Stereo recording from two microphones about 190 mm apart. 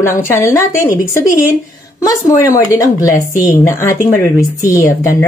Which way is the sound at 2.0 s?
20° left (ahead or behind).